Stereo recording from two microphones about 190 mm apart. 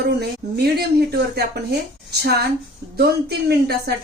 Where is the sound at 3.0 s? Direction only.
60° right (ahead or behind).